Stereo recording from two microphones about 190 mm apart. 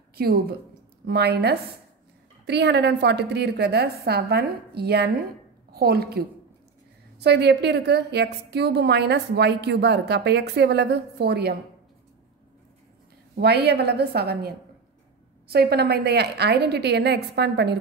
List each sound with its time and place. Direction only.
0.1 s a woman's voice: 55° right (ahead or behind)
13.4 s a woman's voice: 60° right (ahead or behind)